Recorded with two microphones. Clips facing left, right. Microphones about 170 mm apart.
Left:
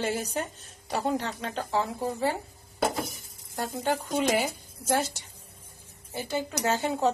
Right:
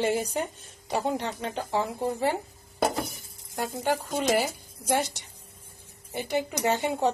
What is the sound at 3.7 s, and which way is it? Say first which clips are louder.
A woman's voice: even; 10° right (ahead or behind).